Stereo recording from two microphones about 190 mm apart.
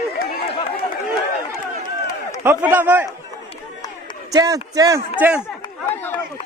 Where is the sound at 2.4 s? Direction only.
10° right (ahead or behind).